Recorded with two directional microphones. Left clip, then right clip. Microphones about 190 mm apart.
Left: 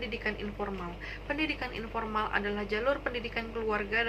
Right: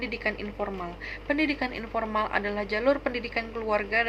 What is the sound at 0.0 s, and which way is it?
A woman's voice, 20° right (ahead or behind).